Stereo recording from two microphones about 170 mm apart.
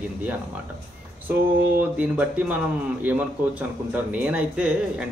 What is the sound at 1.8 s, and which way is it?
Speech, 10° right (ahead or behind).